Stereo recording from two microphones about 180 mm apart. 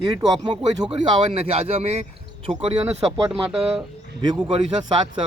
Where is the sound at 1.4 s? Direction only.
35° right (ahead or behind).